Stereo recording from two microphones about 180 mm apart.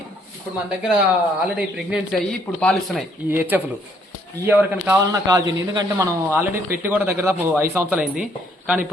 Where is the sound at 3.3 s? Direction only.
10° right (ahead or behind).